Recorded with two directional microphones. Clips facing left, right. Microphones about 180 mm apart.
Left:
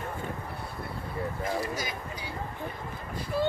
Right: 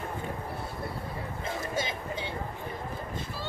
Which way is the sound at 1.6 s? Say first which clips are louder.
Right 2 dB; 25° right (ahead or behind).